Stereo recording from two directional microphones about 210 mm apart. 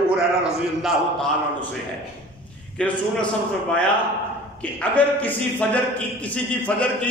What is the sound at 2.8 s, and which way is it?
Speech, 5° left (ahead or behind).